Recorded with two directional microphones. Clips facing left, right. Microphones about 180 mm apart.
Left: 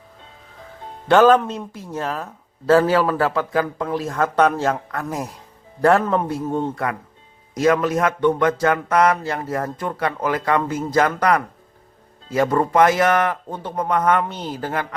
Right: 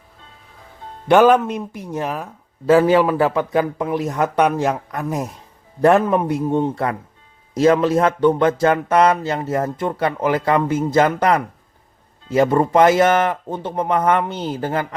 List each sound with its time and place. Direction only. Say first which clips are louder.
1.0 s speech: right 1 dB; 15° right (ahead or behind)